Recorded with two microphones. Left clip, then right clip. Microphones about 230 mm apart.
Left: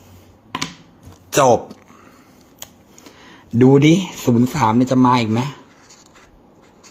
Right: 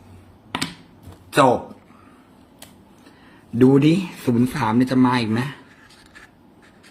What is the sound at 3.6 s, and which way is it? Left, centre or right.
Speech, left.